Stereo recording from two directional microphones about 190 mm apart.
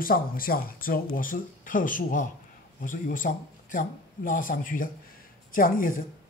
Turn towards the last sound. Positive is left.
turn(degrees=45)  # may be behind; listen again after turning